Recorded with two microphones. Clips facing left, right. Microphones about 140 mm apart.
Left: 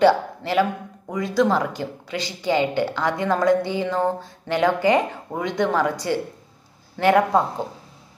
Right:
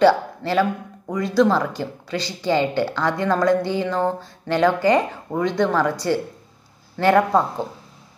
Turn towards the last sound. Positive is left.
turn(degrees=15)  # may be behind; listen again after turning